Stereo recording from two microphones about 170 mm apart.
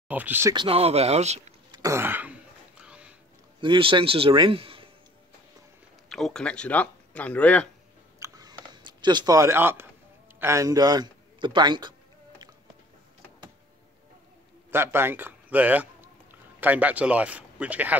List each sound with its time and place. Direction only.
0.1 s speech: 10° right (ahead or behind)
0.6 s a man's voice: 35° right (ahead or behind)
1.7 s throat clearing: 20° right (ahead or behind)
2.8 s a sound: 5° right (ahead or behind)
3.6 s a man's voice: 30° right (ahead or behind)
6.0 s speech: centre (ahead or behind)
8.2 s a sound: 25° right (ahead or behind)
10.4 s a man's voice: 15° right (ahead or behind)
14.7 s a man's voice: 15° right (ahead or behind)